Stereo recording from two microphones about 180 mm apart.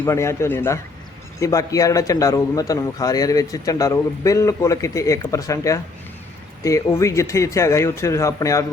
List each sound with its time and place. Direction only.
0.0 s a man's voice: 15° left (ahead or behind)